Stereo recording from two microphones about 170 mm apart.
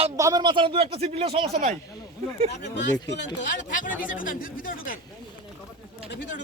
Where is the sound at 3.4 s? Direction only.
50° left (ahead or behind).